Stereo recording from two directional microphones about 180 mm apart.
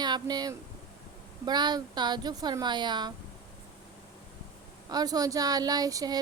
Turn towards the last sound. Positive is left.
turn(degrees=-20)  # may be behind; listen again after turning